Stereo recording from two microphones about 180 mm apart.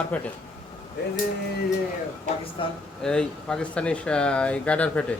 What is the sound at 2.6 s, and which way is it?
Speech, 30° left (ahead or behind).